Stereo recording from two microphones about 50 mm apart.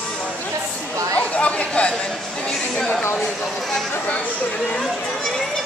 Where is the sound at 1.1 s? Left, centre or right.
Left.